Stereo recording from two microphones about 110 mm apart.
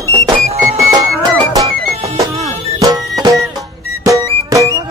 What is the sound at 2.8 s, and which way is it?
Music, 35° right (ahead or behind).